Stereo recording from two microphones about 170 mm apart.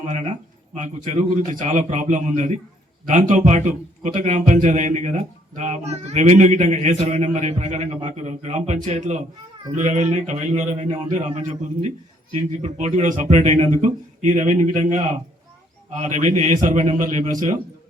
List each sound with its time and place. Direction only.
0.7 s speech: 45° right (ahead or behind)